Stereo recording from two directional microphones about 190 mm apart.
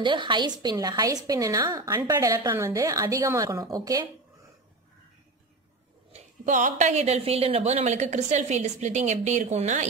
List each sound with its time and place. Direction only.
0.0 s a woman's voice: 25° right (ahead or behind)
6.1 s a woman's voice: 40° right (ahead or behind)